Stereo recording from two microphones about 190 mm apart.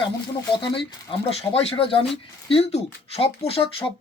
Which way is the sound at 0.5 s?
25° left (ahead or behind).